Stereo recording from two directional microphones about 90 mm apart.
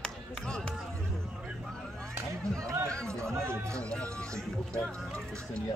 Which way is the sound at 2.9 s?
10° left (ahead or behind).